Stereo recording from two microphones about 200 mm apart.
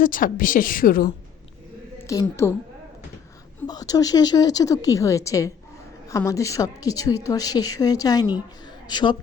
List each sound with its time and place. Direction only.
0.0 s speech: 45° left (ahead or behind)
2.2 s a woman's voice: 10° left (ahead or behind)
3.7 s a woman's voice: 20° left (ahead or behind)